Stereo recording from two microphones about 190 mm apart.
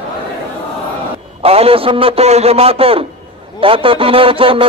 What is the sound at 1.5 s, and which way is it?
A man's voice, 30° right (ahead or behind).